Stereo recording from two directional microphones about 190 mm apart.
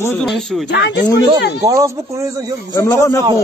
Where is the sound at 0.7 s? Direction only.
65° left (ahead or behind).